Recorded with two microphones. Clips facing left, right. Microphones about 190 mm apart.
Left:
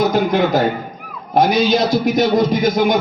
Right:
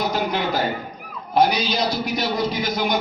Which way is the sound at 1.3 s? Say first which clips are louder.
Left 5 dB; 45° left (ahead or behind).